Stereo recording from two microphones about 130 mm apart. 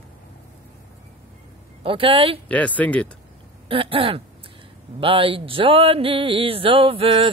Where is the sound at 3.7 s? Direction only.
45° right (ahead or behind).